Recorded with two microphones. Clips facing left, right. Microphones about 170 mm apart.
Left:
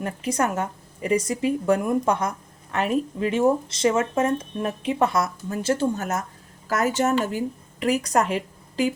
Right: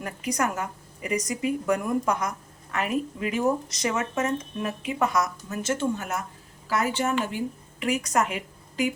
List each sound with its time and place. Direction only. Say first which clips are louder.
0.0 s a woman's voice: left 3 dB; 30° left (ahead or behind)